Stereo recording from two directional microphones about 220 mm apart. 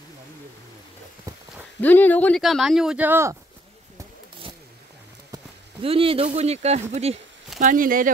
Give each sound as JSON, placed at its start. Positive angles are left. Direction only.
{"t": 1.8, "sound": "speech", "side_deg": 10}
{"t": 5.3, "sound": "speech", "side_deg": -25}